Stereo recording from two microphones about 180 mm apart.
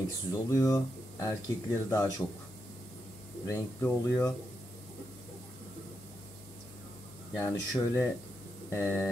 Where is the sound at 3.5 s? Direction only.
15° left (ahead or behind).